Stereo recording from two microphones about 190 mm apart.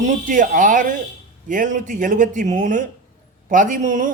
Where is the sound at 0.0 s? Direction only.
45° right (ahead or behind).